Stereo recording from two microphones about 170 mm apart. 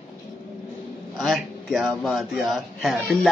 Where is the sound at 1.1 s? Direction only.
Centre (ahead or behind).